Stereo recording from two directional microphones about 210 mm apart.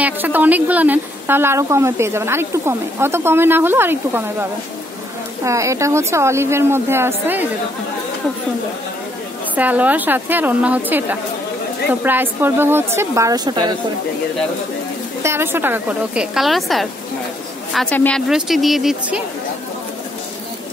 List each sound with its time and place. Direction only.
0.0 s a woman's voice: 10° right (ahead or behind)
9.6 s a woman's voice: 10° right (ahead or behind)
15.2 s a woman's voice: 10° right (ahead or behind)